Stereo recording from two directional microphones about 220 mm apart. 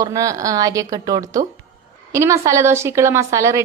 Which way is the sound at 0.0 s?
15° right (ahead or behind).